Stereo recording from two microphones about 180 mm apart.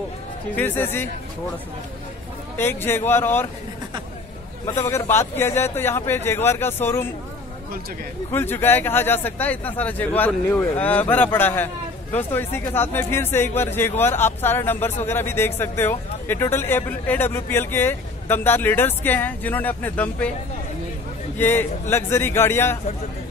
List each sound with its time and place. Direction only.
0.6 s speech: 10° left (ahead or behind)
2.5 s speech: 10° left (ahead or behind)
4.6 s speech: 15° left (ahead or behind)
8.3 s speech: 10° left (ahead or behind)
21.4 s speech: 10° left (ahead or behind)